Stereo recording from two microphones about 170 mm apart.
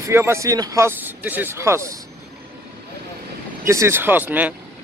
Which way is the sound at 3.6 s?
15° right (ahead or behind).